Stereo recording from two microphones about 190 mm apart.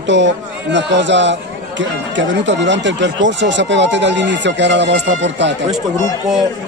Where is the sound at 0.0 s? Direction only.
70° right (ahead or behind).